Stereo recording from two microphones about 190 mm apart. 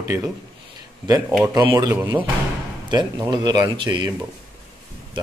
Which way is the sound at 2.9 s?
25° right (ahead or behind).